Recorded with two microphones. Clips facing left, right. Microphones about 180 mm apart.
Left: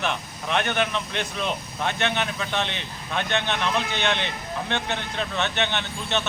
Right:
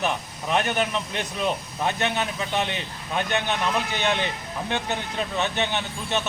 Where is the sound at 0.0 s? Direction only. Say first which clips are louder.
Right 1 dB; 10° right (ahead or behind).